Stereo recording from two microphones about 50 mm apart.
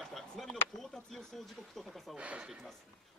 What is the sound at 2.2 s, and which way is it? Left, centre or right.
Speech, right.